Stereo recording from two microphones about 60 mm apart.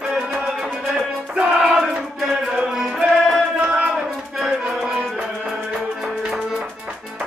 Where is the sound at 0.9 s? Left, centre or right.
Centre.